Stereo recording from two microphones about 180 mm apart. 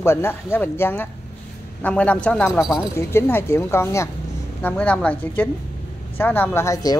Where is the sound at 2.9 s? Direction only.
15° left (ahead or behind).